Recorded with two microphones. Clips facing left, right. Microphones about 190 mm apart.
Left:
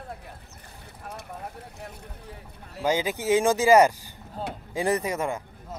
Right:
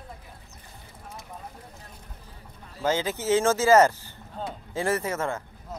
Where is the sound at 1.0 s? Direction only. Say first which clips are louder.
Left 4 dB; 70° left (ahead or behind).